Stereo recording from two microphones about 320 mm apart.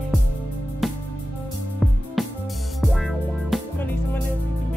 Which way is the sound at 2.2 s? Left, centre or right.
Centre.